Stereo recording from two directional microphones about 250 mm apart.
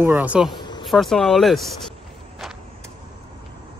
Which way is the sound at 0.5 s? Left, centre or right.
Centre.